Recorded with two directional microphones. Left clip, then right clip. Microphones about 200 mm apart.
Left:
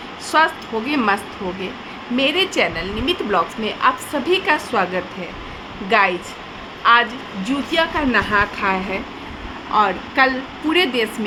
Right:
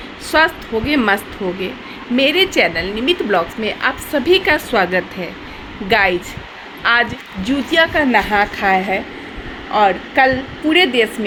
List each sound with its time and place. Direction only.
0.3 s a woman's voice: 15° right (ahead or behind)